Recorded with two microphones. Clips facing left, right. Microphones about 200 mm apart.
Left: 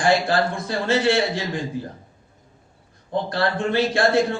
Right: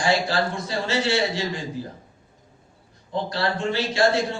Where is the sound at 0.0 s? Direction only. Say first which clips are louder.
Left 3 dB; 55° left (ahead or behind).